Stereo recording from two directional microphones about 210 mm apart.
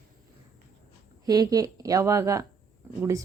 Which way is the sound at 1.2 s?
15° right (ahead or behind).